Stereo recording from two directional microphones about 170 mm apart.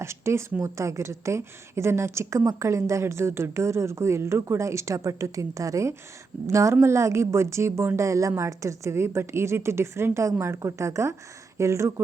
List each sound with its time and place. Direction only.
0.0 s a woman's voice: 15° right (ahead or behind)